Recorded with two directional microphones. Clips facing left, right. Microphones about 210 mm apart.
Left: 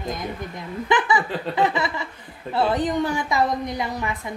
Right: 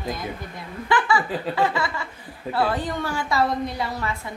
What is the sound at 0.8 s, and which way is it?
A woman's voice, 20° left (ahead or behind).